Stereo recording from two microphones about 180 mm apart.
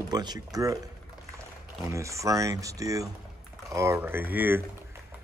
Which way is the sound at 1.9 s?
15° right (ahead or behind).